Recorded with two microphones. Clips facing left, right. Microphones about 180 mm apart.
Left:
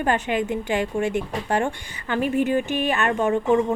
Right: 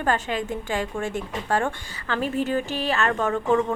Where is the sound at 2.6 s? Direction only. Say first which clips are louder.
Left 4 dB; 35° right (ahead or behind).